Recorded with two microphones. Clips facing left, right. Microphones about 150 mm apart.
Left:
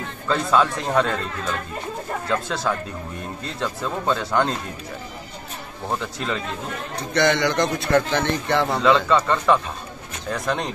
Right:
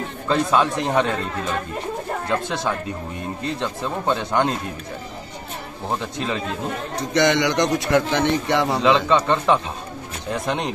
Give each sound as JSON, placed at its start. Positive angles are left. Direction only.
{"t": 0.3, "sound": "a man's voice", "side_deg": -15}
{"t": 5.9, "sound": "a man's voice", "side_deg": -20}